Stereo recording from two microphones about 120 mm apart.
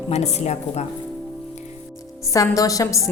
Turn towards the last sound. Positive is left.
turn(degrees=30)  # may be behind; listen again after turning